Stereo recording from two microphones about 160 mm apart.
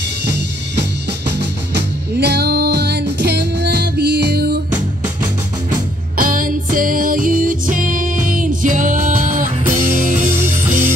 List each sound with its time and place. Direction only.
0.2 s music: 90° right
2.1 s music: 90° right
6.1 s music: 60° right (ahead or behind)